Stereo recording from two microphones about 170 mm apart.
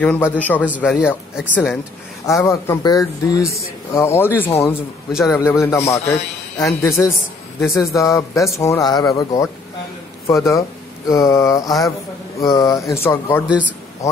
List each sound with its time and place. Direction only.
0.0 s speech: 10° left (ahead or behind)
13.5 s a man's voice: 10° right (ahead or behind)